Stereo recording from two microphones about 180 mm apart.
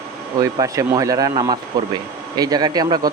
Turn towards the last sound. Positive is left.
turn(degrees=-20)  # may be behind; listen again after turning